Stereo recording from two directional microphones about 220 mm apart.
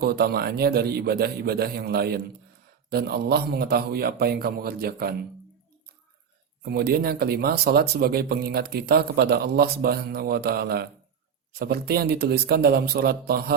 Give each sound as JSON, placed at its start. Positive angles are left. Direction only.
{"t": 0.0, "sound": "speech", "side_deg": -45}
{"t": 6.6, "sound": "speech", "side_deg": -45}